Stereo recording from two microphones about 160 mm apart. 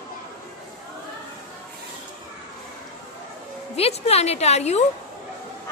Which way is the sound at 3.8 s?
40° left (ahead or behind).